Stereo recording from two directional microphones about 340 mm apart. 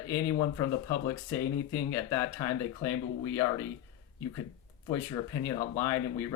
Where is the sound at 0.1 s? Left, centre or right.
Centre.